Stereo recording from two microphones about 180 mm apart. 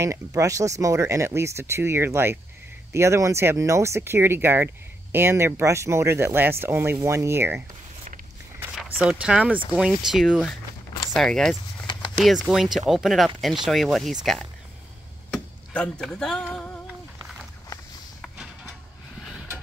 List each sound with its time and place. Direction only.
0.0 s speech: 15° right (ahead or behind)
8.5 s speech: 10° right (ahead or behind)
15.3 s speech: 5° left (ahead or behind)